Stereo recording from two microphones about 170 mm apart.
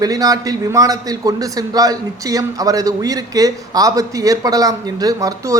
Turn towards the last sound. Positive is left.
turn(degrees=-20)  # may be behind; listen again after turning